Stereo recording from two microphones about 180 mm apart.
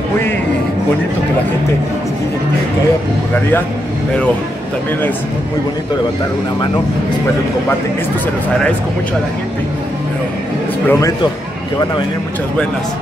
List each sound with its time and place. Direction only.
10.9 s speech: 15° left (ahead or behind)